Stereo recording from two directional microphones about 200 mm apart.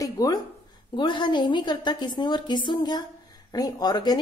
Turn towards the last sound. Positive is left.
turn(degrees=20)  # may be behind; listen again after turning